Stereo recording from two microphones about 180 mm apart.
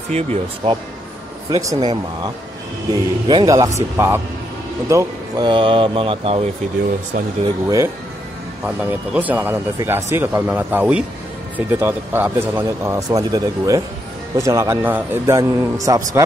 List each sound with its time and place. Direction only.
0.1 s speech: 35° right (ahead or behind)
1.5 s speech: 20° right (ahead or behind)
2.9 s speech: 25° right (ahead or behind)
7.6 s speech: 15° right (ahead or behind)